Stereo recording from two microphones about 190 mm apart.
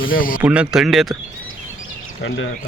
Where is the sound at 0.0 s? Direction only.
50° left (ahead or behind).